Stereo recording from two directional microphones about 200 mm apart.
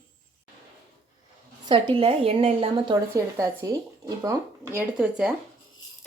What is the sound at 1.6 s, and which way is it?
A woman's voice, 25° right (ahead or behind).